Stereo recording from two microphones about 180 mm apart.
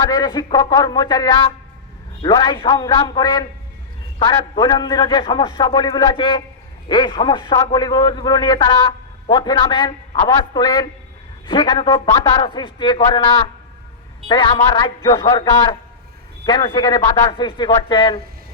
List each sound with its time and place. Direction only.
0.0 s a man's voice: 20° left (ahead or behind)
4.5 s a man's voice: 25° left (ahead or behind)